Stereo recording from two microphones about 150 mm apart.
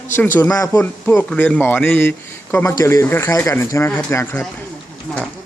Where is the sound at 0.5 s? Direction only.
20° left (ahead or behind).